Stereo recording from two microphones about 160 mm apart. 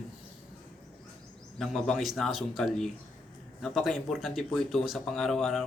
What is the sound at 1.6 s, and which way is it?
Speech, centre (ahead or behind).